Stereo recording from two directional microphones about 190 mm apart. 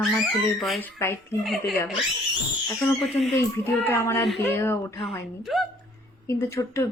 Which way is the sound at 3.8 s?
15° left (ahead or behind).